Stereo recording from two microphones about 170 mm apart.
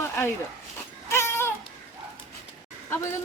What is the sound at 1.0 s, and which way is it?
Baby cry, 15° left (ahead or behind).